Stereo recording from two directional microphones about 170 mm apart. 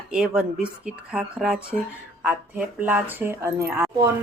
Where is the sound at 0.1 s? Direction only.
5° right (ahead or behind).